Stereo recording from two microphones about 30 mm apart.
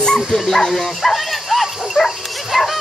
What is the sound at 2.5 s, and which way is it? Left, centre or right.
Dog, centre.